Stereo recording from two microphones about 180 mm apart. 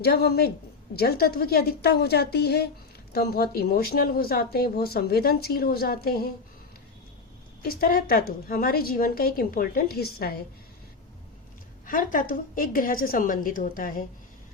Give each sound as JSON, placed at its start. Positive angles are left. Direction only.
{"t": 0.0, "sound": "speech", "side_deg": 65}
{"t": 7.6, "sound": "speech", "side_deg": 55}
{"t": 11.9, "sound": "a woman's voice", "side_deg": 50}